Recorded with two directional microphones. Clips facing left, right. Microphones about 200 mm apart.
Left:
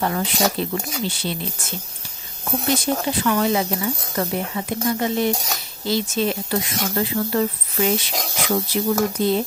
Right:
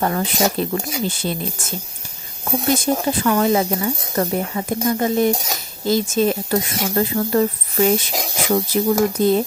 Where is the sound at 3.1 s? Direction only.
45° right (ahead or behind).